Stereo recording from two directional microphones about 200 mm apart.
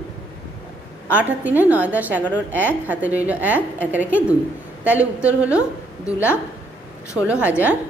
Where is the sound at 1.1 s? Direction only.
10° right (ahead or behind).